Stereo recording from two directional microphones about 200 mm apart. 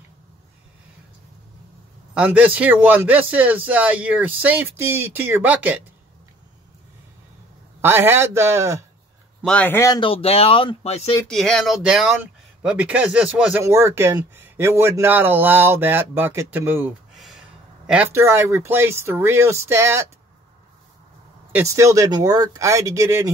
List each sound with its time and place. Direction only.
2.1 s speech: 5° right (ahead or behind)
7.8 s speech: 10° right (ahead or behind)
9.4 s a man's voice: 5° left (ahead or behind)
9.9 s speech: 25° left (ahead or behind)
11.2 s speech: centre (ahead or behind); by 20.1 s 15° right (ahead or behind)
21.5 s speech: 10° right (ahead or behind)